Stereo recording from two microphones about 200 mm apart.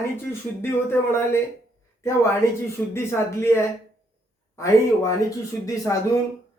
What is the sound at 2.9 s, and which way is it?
Speech, 10° left (ahead or behind).